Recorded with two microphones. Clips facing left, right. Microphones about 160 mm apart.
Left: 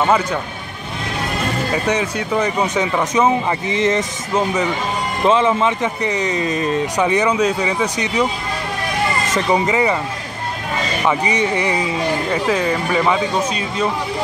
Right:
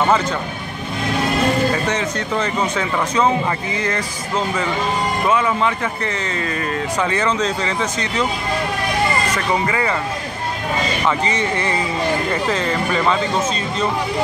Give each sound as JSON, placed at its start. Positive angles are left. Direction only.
{"t": 1.9, "sound": "speech", "side_deg": 10}
{"t": 9.3, "sound": "speech", "side_deg": 20}
{"t": 11.1, "sound": "speech", "side_deg": 15}